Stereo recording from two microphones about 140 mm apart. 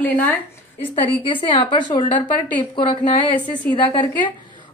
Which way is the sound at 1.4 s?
35° left (ahead or behind).